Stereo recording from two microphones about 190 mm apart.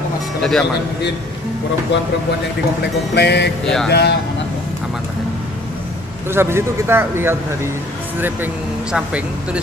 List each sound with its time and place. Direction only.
0.4 s speech: 5° left (ahead or behind)
3.2 s speech: 60° left (ahead or behind)
3.6 s speech: 5° left (ahead or behind)
3.9 s speech: 60° left (ahead or behind)
6.3 s speech: 10° right (ahead or behind)
8.9 s speech: 5° right (ahead or behind)